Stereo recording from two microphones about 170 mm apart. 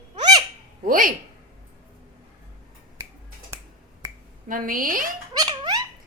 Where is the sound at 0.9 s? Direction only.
55° right (ahead or behind).